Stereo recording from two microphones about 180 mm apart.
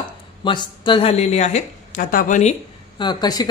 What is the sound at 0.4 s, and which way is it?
A woman's voice, 25° left (ahead or behind).